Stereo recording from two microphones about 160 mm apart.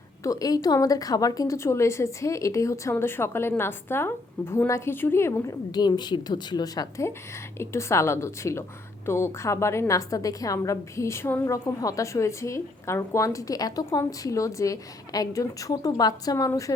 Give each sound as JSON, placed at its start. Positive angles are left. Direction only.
{"t": 0.2, "sound": "a woman's voice", "side_deg": 20}